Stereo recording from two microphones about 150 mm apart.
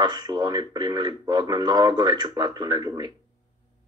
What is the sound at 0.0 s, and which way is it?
A man's voice, 25° right (ahead or behind).